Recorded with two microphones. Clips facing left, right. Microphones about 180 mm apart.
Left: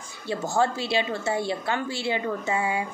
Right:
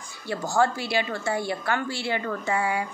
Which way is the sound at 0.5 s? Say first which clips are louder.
Right 1 dB; 25° left (ahead or behind).